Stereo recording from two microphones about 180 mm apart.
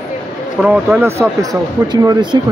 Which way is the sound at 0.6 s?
5° right (ahead or behind).